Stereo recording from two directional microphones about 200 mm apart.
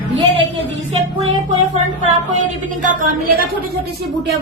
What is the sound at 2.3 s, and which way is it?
A woman's voice, 40° right (ahead or behind).